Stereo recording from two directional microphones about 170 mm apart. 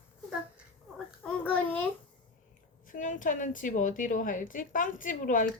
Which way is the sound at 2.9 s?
50° left (ahead or behind).